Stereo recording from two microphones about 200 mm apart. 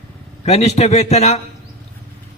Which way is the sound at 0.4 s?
30° left (ahead or behind).